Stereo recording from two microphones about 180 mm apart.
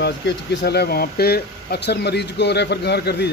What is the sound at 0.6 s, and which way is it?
Speech, 65° left (ahead or behind).